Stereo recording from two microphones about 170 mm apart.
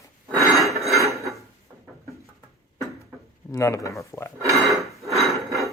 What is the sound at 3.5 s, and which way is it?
Speech, 20° left (ahead or behind).